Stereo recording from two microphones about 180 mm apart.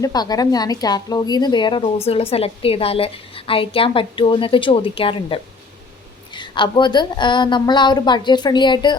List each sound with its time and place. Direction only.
0.0 s a woman's voice: 20° left (ahead or behind)